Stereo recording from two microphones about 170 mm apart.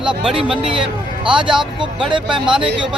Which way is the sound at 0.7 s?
30° right (ahead or behind).